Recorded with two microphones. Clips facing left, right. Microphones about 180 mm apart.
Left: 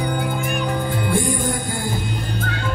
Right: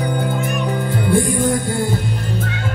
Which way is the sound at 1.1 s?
60° right (ahead or behind).